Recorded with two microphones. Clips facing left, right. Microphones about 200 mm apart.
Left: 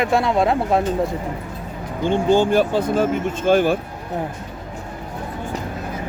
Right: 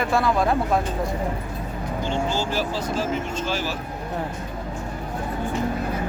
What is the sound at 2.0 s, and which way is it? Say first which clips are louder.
Speech: left 10 dB; 55° left (ahead or behind).